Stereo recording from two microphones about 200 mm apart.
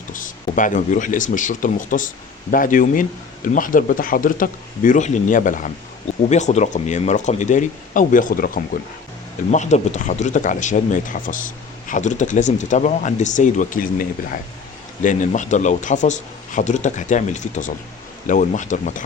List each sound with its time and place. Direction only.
0.1 s speech: 40° left (ahead or behind)
15.0 s speech: 40° left (ahead or behind)